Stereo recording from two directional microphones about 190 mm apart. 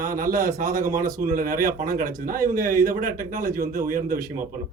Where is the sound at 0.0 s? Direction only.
50° right (ahead or behind).